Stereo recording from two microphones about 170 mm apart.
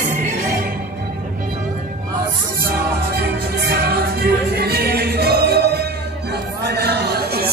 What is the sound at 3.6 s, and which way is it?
Music, 65° right (ahead or behind).